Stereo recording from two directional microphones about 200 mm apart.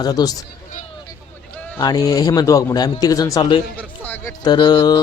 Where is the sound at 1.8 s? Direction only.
20° left (ahead or behind).